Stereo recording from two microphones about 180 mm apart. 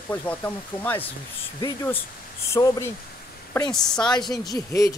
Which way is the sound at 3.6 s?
5° left (ahead or behind).